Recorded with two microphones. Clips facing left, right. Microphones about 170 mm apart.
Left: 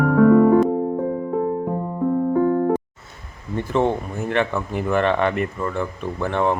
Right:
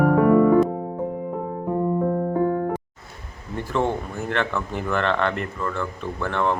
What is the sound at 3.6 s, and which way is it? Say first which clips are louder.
Speech: left 3 dB; 20° left (ahead or behind).